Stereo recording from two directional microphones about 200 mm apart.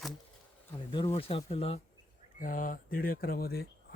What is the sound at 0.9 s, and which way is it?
Speech, 25° left (ahead or behind).